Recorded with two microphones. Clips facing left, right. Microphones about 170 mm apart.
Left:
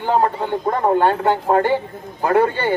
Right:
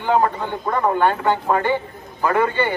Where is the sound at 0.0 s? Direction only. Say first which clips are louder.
Left 1 dB; 40° left (ahead or behind).